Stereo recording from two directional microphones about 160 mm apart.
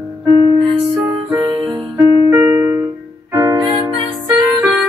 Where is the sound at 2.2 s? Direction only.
15° right (ahead or behind).